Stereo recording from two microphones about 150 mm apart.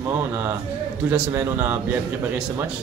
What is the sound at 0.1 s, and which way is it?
A man's voice, 15° right (ahead or behind).